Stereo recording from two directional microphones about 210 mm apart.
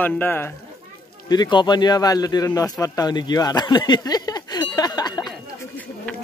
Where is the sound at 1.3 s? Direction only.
20° left (ahead or behind).